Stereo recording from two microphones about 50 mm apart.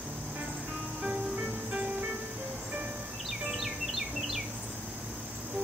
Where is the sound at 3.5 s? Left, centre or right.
Centre.